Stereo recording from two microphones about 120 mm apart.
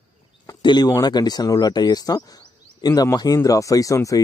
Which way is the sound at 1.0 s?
35° left (ahead or behind).